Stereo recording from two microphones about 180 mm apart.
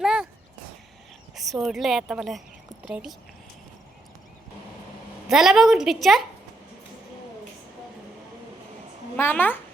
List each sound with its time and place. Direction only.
0.0 s a sound: 5° right (ahead or behind)
1.4 s a woman's voice: centre (ahead or behind)
5.3 s a woman's voice: centre (ahead or behind)
9.1 s a woman's voice: 10° left (ahead or behind)